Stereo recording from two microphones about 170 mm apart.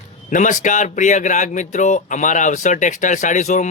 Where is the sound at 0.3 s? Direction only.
50° left (ahead or behind).